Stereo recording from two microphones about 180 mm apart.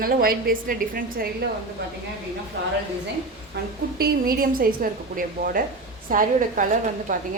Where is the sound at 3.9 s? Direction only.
55° right (ahead or behind).